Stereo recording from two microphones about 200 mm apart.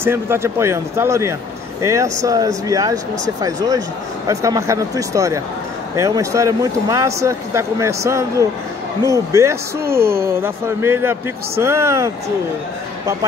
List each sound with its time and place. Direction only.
0.0 s speech: 10° right (ahead or behind)
9.8 s a woman's voice: 50° right (ahead or behind)
10.1 s speech: 10° right (ahead or behind)